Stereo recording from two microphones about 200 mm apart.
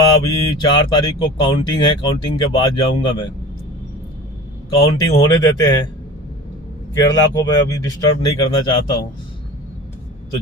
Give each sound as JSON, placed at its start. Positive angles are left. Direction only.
{"t": 0.2, "sound": "speech", "side_deg": 20}
{"t": 4.7, "sound": "speech", "side_deg": 20}
{"t": 6.9, "sound": "speech", "side_deg": 20}